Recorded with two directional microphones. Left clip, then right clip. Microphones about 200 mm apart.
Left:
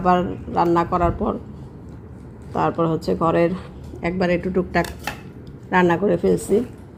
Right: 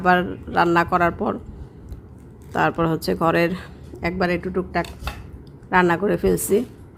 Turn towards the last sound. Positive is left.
turn(degrees=-20)  # may be behind; listen again after turning